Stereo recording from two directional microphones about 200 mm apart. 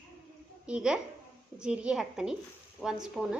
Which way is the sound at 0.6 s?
5° right (ahead or behind).